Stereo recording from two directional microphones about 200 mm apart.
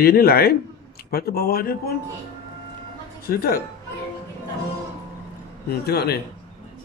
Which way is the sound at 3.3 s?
50° left (ahead or behind).